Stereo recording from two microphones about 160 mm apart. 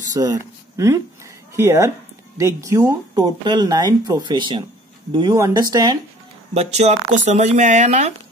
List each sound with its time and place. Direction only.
0.1 s speech: 20° right (ahead or behind)
6.5 s speech: 40° right (ahead or behind)